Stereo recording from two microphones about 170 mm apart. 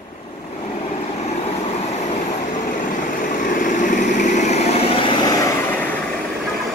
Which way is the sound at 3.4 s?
50° left (ahead or behind).